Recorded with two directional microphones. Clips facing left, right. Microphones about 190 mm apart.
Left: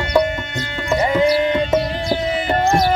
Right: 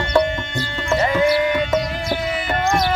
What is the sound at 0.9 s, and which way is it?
Music, 20° left (ahead or behind).